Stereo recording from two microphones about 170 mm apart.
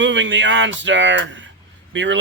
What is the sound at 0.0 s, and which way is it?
Speech, 90° right.